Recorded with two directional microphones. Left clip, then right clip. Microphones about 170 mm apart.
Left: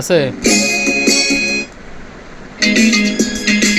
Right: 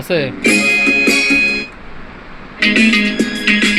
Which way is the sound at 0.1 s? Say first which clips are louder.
Left 3 dB; 20° left (ahead or behind).